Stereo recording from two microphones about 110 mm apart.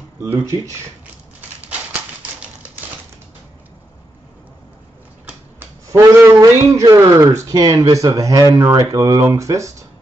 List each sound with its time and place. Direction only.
0.4 s a man's voice: 25° right (ahead or behind)
5.9 s a man's voice: 25° right (ahead or behind)